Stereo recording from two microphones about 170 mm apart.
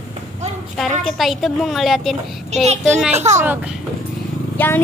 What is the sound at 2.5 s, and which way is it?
Speech, 40° right (ahead or behind).